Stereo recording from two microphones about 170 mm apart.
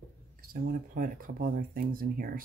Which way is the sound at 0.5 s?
55° right (ahead or behind).